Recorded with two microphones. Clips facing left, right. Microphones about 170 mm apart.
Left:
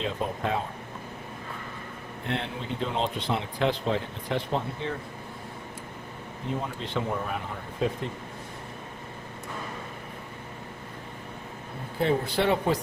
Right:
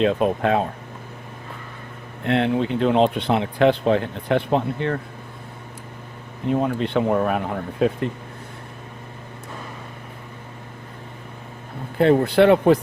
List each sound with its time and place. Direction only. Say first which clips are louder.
0.0 s speech: right 11 dB; 70° right (ahead or behind)
2.2 s speech: right 13 dB; 70° right (ahead or behind)
6.5 s speech: right 11 dB; 65° right (ahead or behind)
11.9 s speech: right 10 dB; 65° right (ahead or behind)